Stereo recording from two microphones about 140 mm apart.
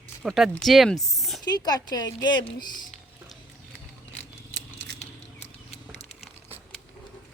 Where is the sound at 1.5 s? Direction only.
30° left (ahead or behind).